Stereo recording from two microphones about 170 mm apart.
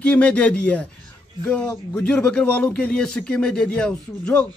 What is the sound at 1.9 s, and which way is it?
A man's voice, 5° left (ahead or behind).